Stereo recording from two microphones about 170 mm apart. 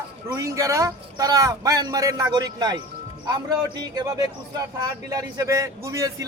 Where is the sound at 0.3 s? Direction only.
20° right (ahead or behind).